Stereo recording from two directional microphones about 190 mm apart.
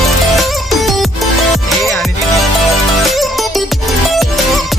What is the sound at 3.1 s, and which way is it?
Music, centre (ahead or behind).